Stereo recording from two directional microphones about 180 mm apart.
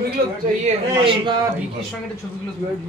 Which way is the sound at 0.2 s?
55° right (ahead or behind).